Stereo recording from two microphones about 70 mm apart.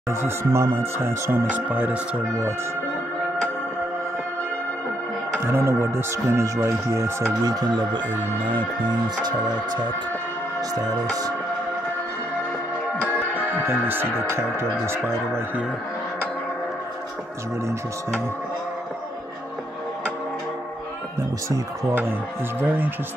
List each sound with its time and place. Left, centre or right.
0.1 s speech: right
1.5 s speech: right
5.4 s speech: right
7.4 s speech: right
9.2 s music: right
13.5 s speech: right
21.5 s speech: right
22.6 s speech: right